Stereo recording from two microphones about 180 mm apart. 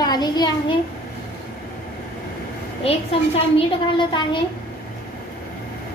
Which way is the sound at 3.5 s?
25° left (ahead or behind).